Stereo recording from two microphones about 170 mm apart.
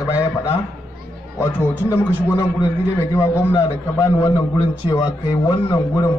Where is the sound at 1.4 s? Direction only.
15° left (ahead or behind).